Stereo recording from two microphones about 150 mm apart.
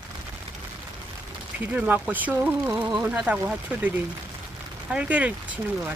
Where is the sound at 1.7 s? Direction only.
10° right (ahead or behind).